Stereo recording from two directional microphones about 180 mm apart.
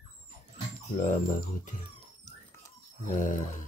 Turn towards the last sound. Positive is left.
turn(degrees=45)  # may be behind; listen again after turning